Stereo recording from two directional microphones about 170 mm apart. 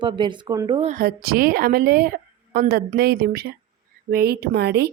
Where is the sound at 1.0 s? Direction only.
60° right (ahead or behind).